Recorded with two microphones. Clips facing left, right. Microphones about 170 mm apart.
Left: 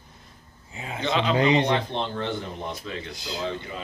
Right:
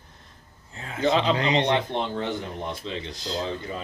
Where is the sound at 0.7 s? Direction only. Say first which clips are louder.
Left 3 dB; 10° left (ahead or behind).